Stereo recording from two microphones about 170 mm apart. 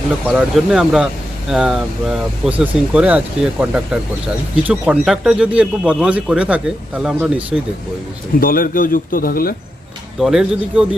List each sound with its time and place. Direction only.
0.3 s a man's voice: centre (ahead or behind)
8.4 s speech: 55° left (ahead or behind)
10.2 s speech: 5° right (ahead or behind)